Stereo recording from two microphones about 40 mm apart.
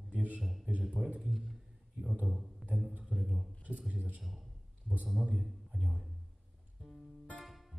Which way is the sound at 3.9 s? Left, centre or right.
Right.